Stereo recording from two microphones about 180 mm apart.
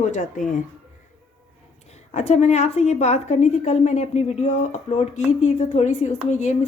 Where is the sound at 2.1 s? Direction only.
40° left (ahead or behind).